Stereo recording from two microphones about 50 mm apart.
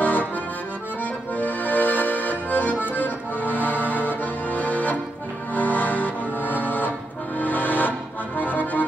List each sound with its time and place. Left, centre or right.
0.0 s accordion: left
1.3 s accordion: left
2.9 s music: left
4.2 s accordion: left
5.5 s music: left